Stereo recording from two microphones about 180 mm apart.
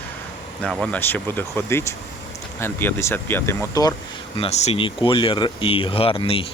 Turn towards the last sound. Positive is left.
turn(degrees=30)  # may be behind; listen again after turning